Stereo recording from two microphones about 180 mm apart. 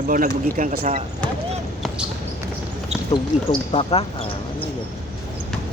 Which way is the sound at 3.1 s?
30° left (ahead or behind).